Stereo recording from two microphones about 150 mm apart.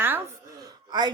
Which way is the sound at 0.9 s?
30° right (ahead or behind).